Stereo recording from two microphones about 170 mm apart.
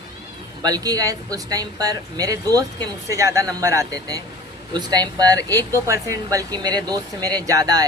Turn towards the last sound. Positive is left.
turn(degrees=-20)  # may be behind; listen again after turning